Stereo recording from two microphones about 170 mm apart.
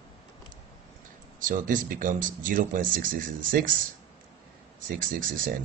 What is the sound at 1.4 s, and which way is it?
Speech, 50° right (ahead or behind).